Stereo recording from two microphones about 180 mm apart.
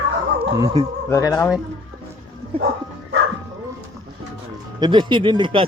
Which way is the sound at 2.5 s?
30° right (ahead or behind).